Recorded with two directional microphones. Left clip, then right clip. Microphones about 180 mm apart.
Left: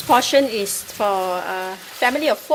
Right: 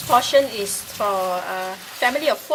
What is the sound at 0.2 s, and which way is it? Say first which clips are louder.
Speech: left 1 dB; 50° left (ahead or behind).